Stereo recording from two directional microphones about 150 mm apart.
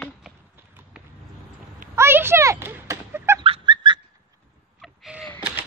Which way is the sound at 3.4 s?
35° right (ahead or behind).